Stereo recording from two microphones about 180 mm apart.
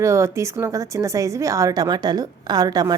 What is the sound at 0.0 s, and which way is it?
A woman's voice, 15° right (ahead or behind).